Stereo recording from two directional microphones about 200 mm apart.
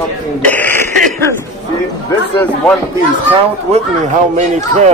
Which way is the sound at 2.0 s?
10° left (ahead or behind).